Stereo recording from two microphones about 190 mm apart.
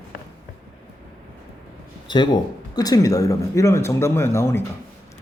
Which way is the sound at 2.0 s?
25° left (ahead or behind).